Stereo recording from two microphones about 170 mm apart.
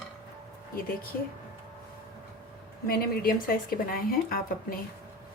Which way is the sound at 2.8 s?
60° left (ahead or behind).